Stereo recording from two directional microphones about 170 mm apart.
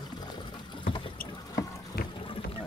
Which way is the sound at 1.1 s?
60° left (ahead or behind).